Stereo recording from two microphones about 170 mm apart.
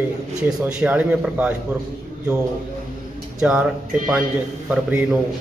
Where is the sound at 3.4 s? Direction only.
5° right (ahead or behind).